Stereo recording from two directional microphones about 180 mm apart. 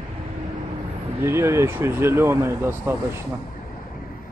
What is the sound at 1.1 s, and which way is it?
Speech, 10° right (ahead or behind).